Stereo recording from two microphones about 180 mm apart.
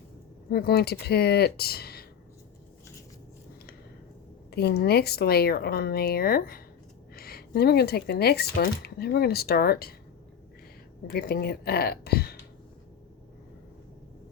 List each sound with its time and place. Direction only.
0.5 s speech: 60° left (ahead or behind)
4.5 s speech: 60° left (ahead or behind)
11.1 s speech: 60° left (ahead or behind)